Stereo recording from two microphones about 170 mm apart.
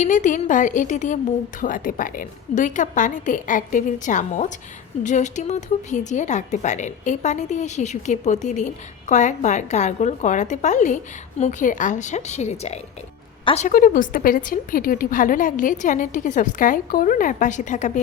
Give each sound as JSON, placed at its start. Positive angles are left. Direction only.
{"t": 0.0, "sound": "a woman's voice", "side_deg": 45}
{"t": 13.7, "sound": "a woman's voice", "side_deg": 55}